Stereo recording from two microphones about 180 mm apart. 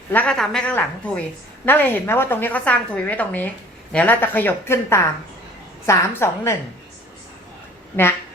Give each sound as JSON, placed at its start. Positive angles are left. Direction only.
{"t": 0.1, "sound": "a woman's voice", "side_deg": 5}